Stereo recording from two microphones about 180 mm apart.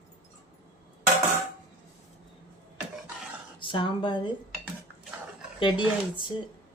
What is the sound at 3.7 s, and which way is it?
Speech, 25° left (ahead or behind).